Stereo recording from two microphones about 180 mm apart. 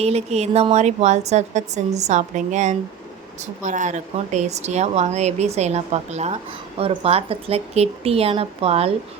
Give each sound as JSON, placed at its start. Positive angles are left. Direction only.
{"t": 0.0, "sound": "speech", "side_deg": -35}